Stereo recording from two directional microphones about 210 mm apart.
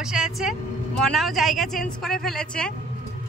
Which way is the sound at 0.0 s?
5° right (ahead or behind).